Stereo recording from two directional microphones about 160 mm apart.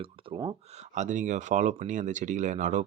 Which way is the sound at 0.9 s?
50° right (ahead or behind).